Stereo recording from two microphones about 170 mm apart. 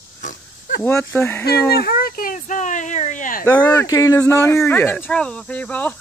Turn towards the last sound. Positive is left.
turn(degrees=10)  # may be behind; listen again after turning